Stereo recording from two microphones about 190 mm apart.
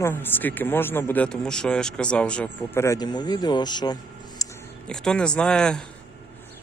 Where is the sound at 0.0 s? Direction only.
10° left (ahead or behind).